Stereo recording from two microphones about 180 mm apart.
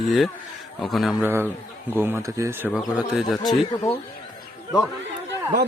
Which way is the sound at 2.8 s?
Centre (ahead or behind).